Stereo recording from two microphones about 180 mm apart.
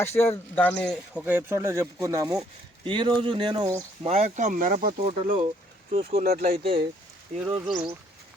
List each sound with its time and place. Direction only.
0.0 s speech: 15° left (ahead or behind); by 3.8 s 20° right (ahead or behind)
4.0 s speech: 35° right (ahead or behind)
4.9 s speech: 35° right (ahead or behind)
6.0 s speech: 55° right (ahead or behind)
6.6 s speech: 30° right (ahead or behind)